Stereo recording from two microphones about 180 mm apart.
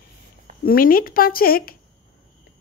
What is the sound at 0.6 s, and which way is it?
Speech, 55° left (ahead or behind).